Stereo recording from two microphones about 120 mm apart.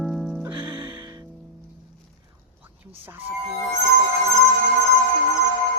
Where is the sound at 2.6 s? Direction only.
15° right (ahead or behind).